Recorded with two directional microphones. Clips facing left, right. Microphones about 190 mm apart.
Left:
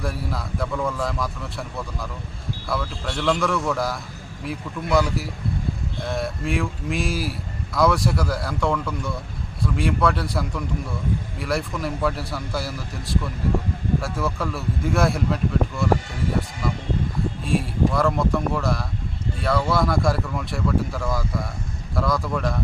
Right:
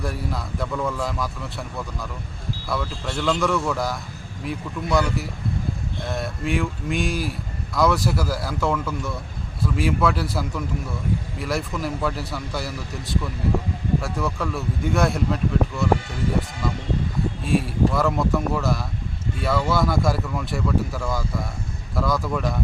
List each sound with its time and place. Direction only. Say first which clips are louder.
0.0 s a man's voice: even; centre (ahead or behind)
17.4 s a man's voice: right 1 dB; centre (ahead or behind)